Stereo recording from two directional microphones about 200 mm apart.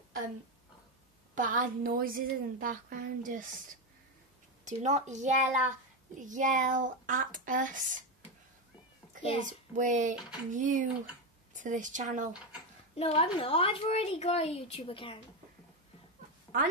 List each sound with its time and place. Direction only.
1.3 s a woman's voice: 40° right (ahead or behind)
4.6 s a woman's voice: 35° right (ahead or behind)
9.4 s a woman's voice: 40° right (ahead or behind)
12.9 s a woman's voice: 30° left (ahead or behind)